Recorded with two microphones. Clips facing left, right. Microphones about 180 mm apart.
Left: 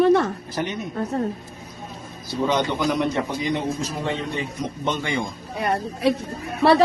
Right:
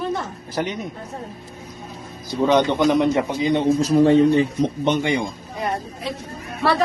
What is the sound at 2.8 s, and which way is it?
A man's voice, 20° right (ahead or behind).